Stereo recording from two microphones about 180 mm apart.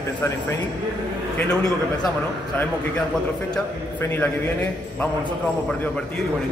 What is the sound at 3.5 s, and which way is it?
Speech, 10° left (ahead or behind).